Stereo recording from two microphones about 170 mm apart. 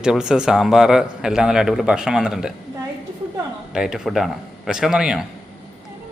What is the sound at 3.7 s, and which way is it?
A man's voice, 5° right (ahead or behind).